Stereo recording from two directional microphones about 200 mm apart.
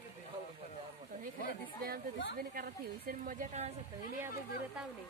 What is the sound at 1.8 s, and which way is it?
A woman's voice, 45° right (ahead or behind).